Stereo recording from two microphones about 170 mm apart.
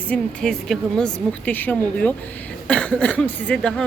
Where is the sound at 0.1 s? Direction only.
5° left (ahead or behind).